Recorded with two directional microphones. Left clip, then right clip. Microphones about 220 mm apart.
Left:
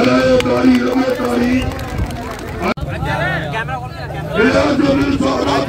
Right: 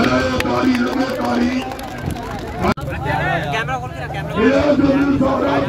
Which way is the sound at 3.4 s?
45° right (ahead or behind).